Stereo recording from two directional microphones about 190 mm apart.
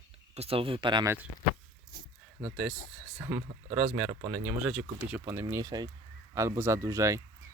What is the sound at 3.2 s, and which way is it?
Speech, 20° right (ahead or behind).